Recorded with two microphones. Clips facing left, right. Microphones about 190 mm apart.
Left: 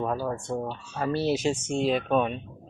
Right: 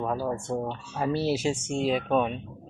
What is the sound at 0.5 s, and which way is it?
Speech, 15° right (ahead or behind).